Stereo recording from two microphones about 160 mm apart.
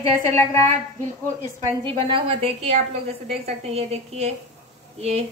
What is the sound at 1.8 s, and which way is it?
A woman's voice, 35° right (ahead or behind).